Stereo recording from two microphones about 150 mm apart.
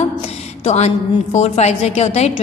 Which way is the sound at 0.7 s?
50° left (ahead or behind).